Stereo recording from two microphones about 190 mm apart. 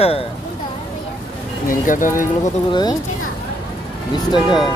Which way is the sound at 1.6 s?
45° left (ahead or behind).